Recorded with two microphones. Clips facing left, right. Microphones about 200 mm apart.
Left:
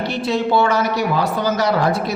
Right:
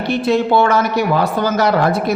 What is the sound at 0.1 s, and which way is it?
Speech, 55° right (ahead or behind).